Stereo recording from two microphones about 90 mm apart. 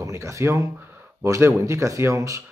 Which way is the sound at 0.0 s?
35° right (ahead or behind).